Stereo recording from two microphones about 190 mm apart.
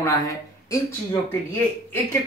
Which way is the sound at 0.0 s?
15° left (ahead or behind).